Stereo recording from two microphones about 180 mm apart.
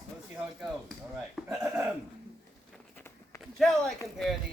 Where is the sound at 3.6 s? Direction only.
Centre (ahead or behind).